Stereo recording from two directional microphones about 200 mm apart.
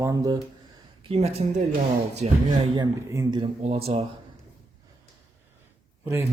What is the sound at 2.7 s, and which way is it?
Speech, 20° right (ahead or behind).